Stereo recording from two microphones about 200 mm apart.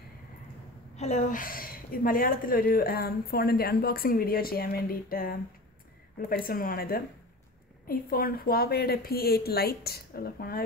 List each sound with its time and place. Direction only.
0.9 s a woman's voice: 35° left (ahead or behind)